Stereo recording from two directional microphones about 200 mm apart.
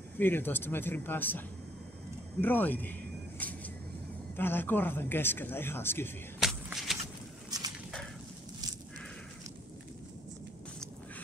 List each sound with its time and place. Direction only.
0.2 s speech: 10° left (ahead or behind)
2.4 s a sound: 10° left (ahead or behind)
4.4 s speech: 10° left (ahead or behind)
6.4 s shuffle: centre (ahead or behind)